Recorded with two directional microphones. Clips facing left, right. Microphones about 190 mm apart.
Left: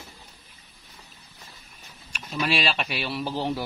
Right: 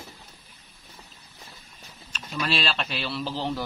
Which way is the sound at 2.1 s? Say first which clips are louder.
Left 2 dB; 10° left (ahead or behind).